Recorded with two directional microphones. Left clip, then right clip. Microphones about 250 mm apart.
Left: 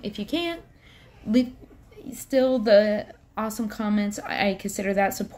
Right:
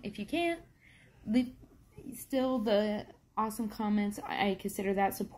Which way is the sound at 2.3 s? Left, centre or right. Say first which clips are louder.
Left 12 dB; centre.